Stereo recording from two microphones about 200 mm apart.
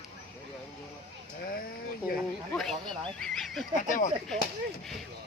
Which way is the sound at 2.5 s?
Centre (ahead or behind).